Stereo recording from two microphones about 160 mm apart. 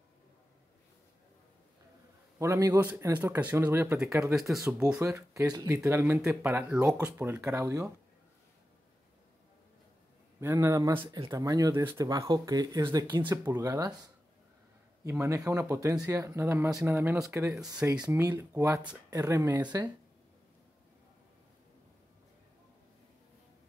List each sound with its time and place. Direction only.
2.3 s speech: 20° right (ahead or behind)
4.6 s speech: 5° right (ahead or behind)
5.0 s speech: 15° right (ahead or behind)
10.4 s speech: 15° right (ahead or behind)
15.0 s speech: 15° right (ahead or behind)